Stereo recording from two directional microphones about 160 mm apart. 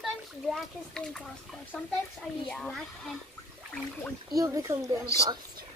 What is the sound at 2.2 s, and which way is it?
Speech, 5° left (ahead or behind).